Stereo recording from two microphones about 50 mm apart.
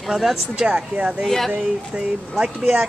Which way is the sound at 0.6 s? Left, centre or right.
Right.